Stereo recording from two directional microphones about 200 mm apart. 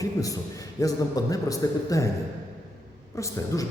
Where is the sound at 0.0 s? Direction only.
15° left (ahead or behind).